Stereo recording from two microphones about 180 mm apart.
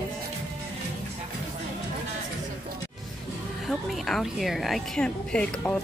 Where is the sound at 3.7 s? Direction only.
Centre (ahead or behind).